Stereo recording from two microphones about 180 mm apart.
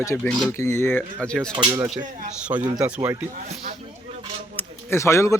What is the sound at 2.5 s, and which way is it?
Speech, 20° right (ahead or behind).